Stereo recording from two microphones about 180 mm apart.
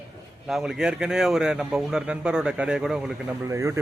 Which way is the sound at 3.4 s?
15° right (ahead or behind).